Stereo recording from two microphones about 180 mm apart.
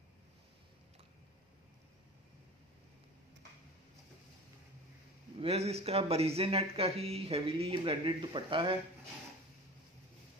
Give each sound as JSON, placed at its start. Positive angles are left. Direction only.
{"t": 5.4, "sound": "speech", "side_deg": -35}